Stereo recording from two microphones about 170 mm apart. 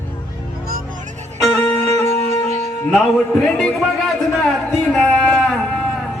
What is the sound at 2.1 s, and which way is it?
Music, 40° right (ahead or behind).